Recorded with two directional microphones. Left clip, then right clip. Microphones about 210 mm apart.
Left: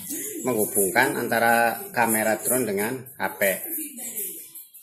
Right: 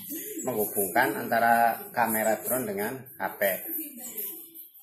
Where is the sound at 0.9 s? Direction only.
50° left (ahead or behind).